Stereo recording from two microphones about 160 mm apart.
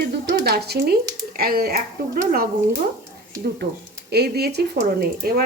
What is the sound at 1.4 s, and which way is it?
Speech, 70° right (ahead or behind).